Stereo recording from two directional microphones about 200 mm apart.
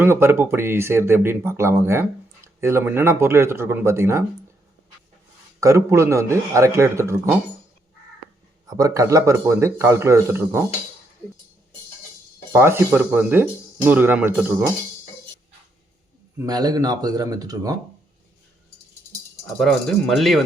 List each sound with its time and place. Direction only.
0.0 s speech: 10° right (ahead or behind)
5.5 s speech: 15° right (ahead or behind)
8.6 s speech: 15° right (ahead or behind)
12.5 s speech: 10° right (ahead or behind)
16.4 s speech: 20° right (ahead or behind)
19.5 s speech: centre (ahead or behind)